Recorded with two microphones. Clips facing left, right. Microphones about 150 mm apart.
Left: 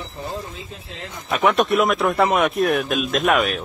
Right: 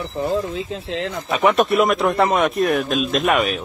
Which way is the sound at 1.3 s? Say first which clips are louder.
Right 1 dB; centre (ahead or behind).